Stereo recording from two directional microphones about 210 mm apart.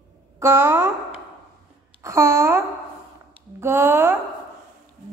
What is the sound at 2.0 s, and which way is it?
Babbling, 15° right (ahead or behind).